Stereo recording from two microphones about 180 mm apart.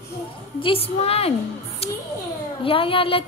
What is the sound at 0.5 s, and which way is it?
Speech, 30° left (ahead or behind).